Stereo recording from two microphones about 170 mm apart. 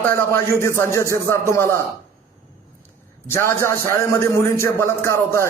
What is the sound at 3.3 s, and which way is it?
A man's voice, 15° left (ahead or behind).